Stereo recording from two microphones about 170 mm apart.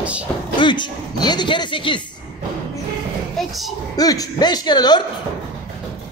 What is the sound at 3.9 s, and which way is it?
Speech, 20° left (ahead or behind).